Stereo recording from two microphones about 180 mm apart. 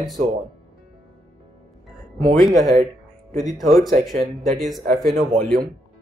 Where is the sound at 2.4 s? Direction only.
Centre (ahead or behind).